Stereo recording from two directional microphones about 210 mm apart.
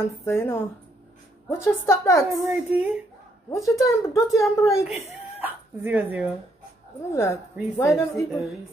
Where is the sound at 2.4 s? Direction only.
10° right (ahead or behind).